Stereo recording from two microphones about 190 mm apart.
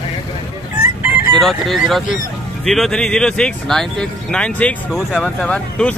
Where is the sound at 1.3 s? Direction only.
Centre (ahead or behind).